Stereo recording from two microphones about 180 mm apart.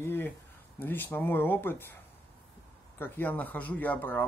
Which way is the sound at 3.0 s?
10° left (ahead or behind).